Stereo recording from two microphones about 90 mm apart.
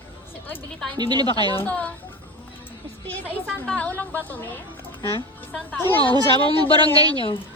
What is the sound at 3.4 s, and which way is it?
Speech, 10° left (ahead or behind).